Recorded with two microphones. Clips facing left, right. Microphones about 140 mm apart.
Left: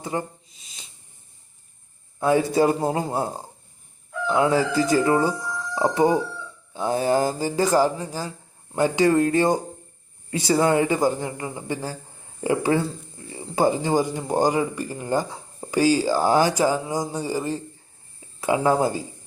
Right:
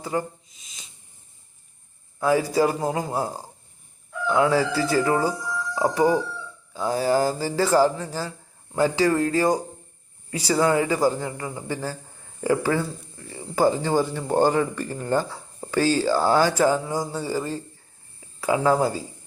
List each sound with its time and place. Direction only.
0.0 s a sound: 25° left (ahead or behind)
2.2 s speech: 25° left (ahead or behind)
10.6 s speech: 25° left (ahead or behind)